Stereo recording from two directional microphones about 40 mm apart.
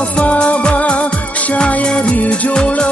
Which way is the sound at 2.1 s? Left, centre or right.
Left.